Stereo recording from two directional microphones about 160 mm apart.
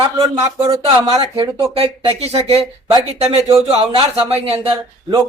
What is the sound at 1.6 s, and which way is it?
Speech, 35° right (ahead or behind).